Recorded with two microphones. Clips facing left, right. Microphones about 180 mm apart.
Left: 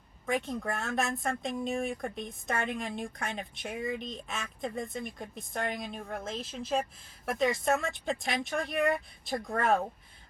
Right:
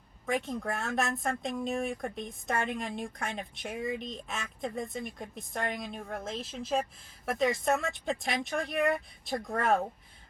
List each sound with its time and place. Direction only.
0.4 s speech: centre (ahead or behind)
8.3 s speech: 35° left (ahead or behind)
9.5 s speech: centre (ahead or behind)